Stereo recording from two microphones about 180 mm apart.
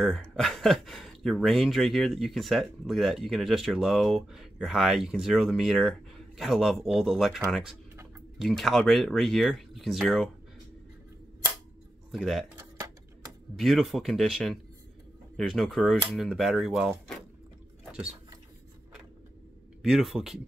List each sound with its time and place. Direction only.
0.0 s speech: centre (ahead or behind)
12.1 s speech: centre (ahead or behind)
12.5 s a sound: 20° right (ahead or behind)
13.6 s speech: centre (ahead or behind)
19.8 s speech: centre (ahead or behind)